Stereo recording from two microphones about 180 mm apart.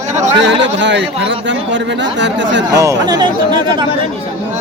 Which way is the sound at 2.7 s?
15° right (ahead or behind).